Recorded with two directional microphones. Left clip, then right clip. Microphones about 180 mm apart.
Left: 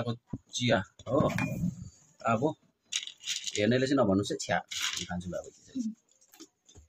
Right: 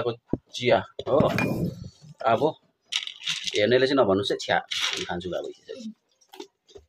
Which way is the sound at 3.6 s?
20° left (ahead or behind).